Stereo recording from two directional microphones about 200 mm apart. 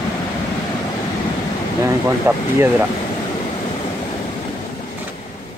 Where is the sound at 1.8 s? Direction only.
10° right (ahead or behind).